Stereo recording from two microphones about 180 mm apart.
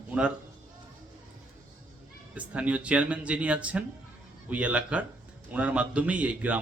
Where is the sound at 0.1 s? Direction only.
5° right (ahead or behind).